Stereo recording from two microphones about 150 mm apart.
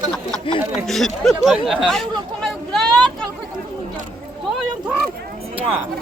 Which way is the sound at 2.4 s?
Centre (ahead or behind).